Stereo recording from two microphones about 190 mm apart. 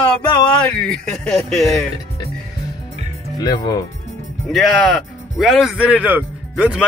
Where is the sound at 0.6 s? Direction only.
5° left (ahead or behind).